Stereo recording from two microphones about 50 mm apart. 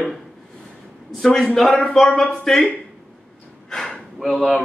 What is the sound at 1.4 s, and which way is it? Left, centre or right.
A man's voice, centre.